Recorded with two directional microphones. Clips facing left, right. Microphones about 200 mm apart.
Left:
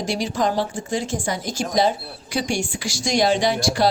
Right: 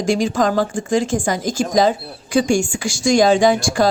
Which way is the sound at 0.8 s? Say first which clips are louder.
Right 7 dB; 90° right.